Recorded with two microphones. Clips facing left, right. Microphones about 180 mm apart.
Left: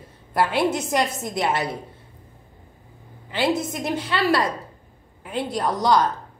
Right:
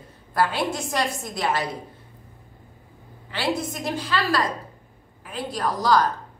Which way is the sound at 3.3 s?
20° left (ahead or behind).